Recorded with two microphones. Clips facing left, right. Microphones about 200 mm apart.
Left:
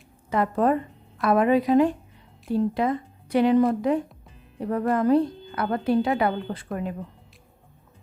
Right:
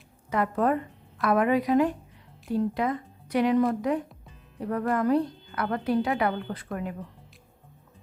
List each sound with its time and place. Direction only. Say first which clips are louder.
0.3 s a woman's voice: left 3 dB; 30° left (ahead or behind)